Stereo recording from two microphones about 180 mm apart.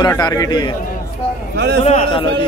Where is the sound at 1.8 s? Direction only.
35° left (ahead or behind).